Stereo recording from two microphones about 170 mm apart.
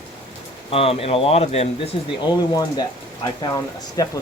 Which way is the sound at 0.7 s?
35° left (ahead or behind).